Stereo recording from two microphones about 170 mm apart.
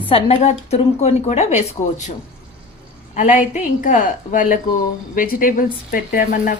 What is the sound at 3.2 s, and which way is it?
Speech, 50° left (ahead or behind).